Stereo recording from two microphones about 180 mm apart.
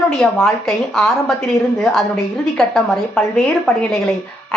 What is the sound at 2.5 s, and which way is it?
A woman's voice, centre (ahead or behind).